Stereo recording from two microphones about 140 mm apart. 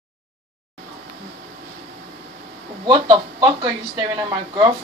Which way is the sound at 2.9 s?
35° right (ahead or behind).